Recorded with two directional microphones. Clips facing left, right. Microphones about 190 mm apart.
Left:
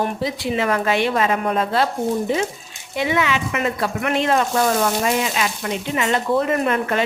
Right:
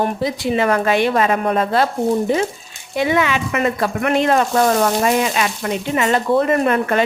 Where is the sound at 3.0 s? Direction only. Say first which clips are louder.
Right 3 dB; 45° right (ahead or behind).